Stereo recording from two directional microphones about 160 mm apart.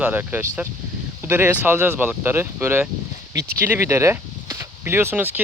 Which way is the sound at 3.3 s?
90° right.